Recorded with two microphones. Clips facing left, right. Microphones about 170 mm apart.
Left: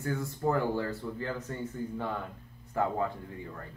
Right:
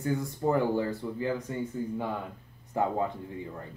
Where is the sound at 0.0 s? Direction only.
15° right (ahead or behind).